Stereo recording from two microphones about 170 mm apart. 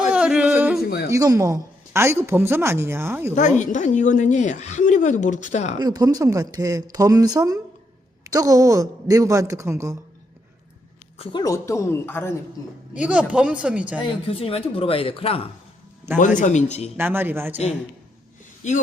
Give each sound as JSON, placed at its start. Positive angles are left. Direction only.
{"t": 0.1, "sound": "yodeling", "side_deg": -5}
{"t": 1.1, "sound": "speech", "side_deg": -20}
{"t": 3.3, "sound": "speech", "side_deg": 45}
{"t": 5.8, "sound": "a woman's voice", "side_deg": -25}
{"t": 11.2, "sound": "speech", "side_deg": 30}
{"t": 12.9, "sound": "speech", "side_deg": -5}
{"t": 14.0, "sound": "speech", "side_deg": 35}
{"t": 16.4, "sound": "speech", "side_deg": 45}
{"t": 17.0, "sound": "speech", "side_deg": -10}
{"t": 18.6, "sound": "speech", "side_deg": 45}